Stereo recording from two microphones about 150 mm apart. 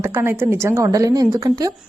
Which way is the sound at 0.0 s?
15° right (ahead or behind).